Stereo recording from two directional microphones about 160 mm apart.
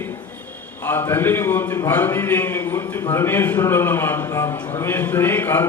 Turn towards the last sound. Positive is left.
turn(degrees=15)  # may be behind; listen again after turning